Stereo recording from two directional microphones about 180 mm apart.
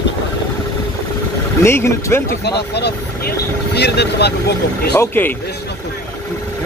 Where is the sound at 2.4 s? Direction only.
65° left (ahead or behind).